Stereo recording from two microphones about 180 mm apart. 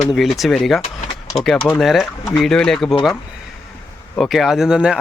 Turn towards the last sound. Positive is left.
turn(degrees=-5)  # may be behind; listen again after turning